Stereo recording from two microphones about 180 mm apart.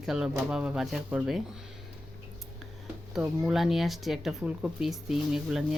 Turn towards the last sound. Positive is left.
turn(degrees=-5)  # may be behind; listen again after turning